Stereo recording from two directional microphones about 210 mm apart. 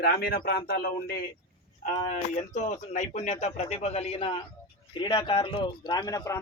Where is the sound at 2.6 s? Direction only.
35° left (ahead or behind).